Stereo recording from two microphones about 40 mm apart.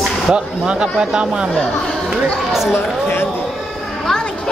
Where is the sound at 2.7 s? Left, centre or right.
Left.